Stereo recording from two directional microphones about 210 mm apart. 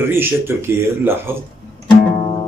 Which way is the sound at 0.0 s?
10° right (ahead or behind).